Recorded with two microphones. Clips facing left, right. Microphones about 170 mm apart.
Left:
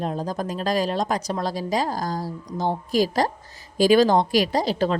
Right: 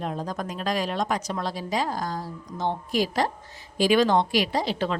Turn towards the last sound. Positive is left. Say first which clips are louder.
# left 4 dB
turn(degrees=40)  # may be behind; listen again after turning